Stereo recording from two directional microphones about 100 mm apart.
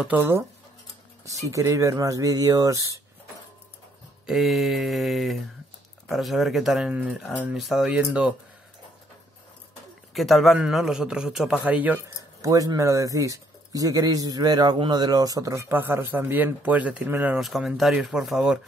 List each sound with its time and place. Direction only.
0.2 s speech: 20° right (ahead or behind)
1.5 s speech: 30° right (ahead or behind)
4.3 s speech: centre (ahead or behind)
10.1 s speech: centre (ahead or behind)
11.6 s speech: 15° right (ahead or behind)
12.4 s speech: 35° right (ahead or behind)
15.7 s speech: 20° right (ahead or behind)
17.4 s speech: 5° right (ahead or behind)